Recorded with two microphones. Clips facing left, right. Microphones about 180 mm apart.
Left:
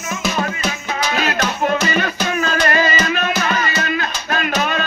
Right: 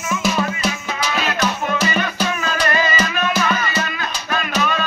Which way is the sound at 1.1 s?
45° left (ahead or behind).